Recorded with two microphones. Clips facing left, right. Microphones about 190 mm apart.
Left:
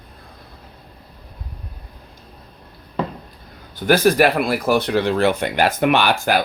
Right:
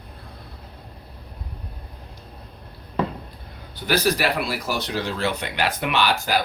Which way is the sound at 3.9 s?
50° left (ahead or behind).